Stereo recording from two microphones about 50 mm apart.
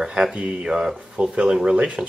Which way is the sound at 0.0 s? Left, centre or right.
Centre.